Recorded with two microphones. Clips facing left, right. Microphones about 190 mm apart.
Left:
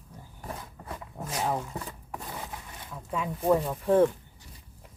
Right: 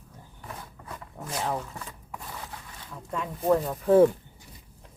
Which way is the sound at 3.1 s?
5° left (ahead or behind).